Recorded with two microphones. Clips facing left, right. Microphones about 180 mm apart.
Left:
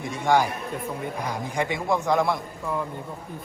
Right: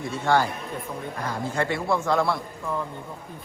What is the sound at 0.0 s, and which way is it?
A man's voice, 15° left (ahead or behind).